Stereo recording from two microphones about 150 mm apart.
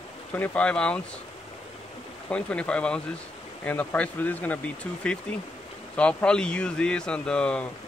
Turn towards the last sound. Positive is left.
turn(degrees=5)  # may be behind; listen again after turning